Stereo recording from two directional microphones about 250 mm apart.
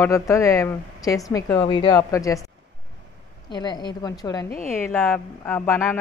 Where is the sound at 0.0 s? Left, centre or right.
Centre.